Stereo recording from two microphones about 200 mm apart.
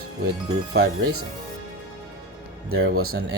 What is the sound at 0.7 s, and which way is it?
Speech, 55° right (ahead or behind).